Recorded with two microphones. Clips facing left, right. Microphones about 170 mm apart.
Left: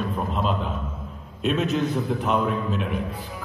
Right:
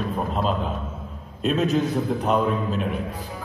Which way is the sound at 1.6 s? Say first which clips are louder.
Right 4 dB; 40° right (ahead or behind).